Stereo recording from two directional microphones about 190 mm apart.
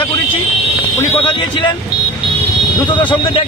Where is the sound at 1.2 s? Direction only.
25° left (ahead or behind).